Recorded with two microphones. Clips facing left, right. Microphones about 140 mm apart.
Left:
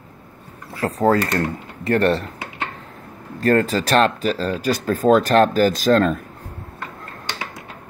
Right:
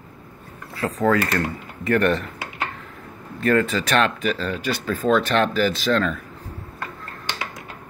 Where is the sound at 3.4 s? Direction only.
35° left (ahead or behind).